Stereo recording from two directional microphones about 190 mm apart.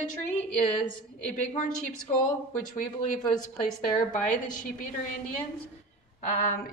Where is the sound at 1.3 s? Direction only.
40° left (ahead or behind).